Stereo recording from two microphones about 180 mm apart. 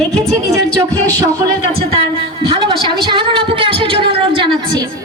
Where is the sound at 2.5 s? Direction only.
25° right (ahead or behind).